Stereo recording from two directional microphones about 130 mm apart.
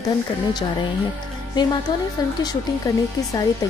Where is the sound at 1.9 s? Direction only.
35° left (ahead or behind).